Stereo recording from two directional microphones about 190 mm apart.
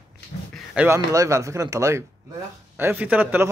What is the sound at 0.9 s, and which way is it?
A man's voice, 15° right (ahead or behind).